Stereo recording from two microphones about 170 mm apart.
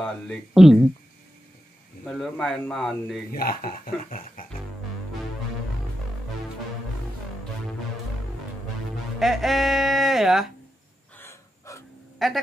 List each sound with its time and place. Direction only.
0.0 s a man's voice: centre (ahead or behind)
2.0 s a man's voice: 5° left (ahead or behind)
3.3 s speech: 60° left (ahead or behind)
9.2 s speech: centre (ahead or behind)
11.1 s gasp: 15° left (ahead or behind)
12.2 s a man's voice: centre (ahead or behind)